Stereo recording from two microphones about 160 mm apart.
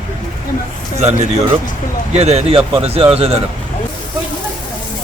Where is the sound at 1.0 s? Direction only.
45° right (ahead or behind).